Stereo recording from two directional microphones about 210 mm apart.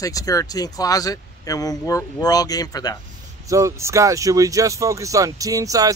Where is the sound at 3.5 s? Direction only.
15° right (ahead or behind).